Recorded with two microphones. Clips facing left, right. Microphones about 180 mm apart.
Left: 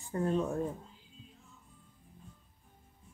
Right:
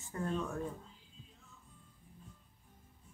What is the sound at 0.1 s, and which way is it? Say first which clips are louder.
Speech: left 6 dB; 30° left (ahead or behind).